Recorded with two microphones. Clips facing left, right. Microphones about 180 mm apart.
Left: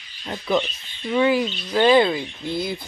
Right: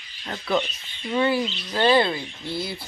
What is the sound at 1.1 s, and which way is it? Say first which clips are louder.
Speech: left 3 dB; 10° left (ahead or behind).